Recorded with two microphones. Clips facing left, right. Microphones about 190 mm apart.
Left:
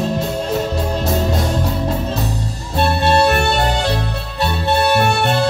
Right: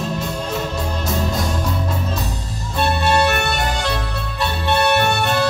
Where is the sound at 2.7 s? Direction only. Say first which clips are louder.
Left 3 dB; 30° left (ahead or behind).